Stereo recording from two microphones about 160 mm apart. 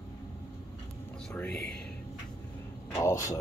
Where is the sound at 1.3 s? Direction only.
5° left (ahead or behind).